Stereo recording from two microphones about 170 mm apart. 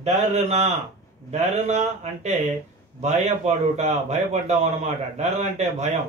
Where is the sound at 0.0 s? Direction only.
40° right (ahead or behind).